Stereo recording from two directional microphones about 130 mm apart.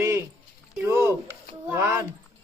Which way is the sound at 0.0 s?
20° right (ahead or behind).